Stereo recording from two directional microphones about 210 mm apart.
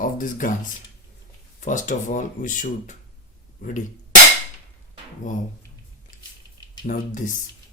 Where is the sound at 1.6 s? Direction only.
40° left (ahead or behind).